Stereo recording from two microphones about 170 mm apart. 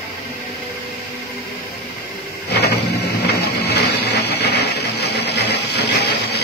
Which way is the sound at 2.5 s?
70° left (ahead or behind).